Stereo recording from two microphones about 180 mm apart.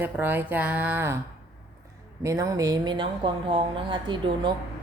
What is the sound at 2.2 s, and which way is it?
A woman's voice, 15° right (ahead or behind).